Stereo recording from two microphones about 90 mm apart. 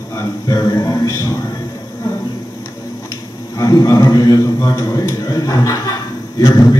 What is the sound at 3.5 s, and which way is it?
Speech, 40° left (ahead or behind).